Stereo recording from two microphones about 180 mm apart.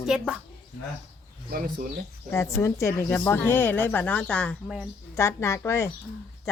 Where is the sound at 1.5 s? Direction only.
55° right (ahead or behind).